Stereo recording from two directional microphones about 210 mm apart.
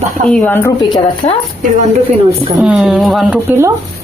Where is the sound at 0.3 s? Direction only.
5° left (ahead or behind).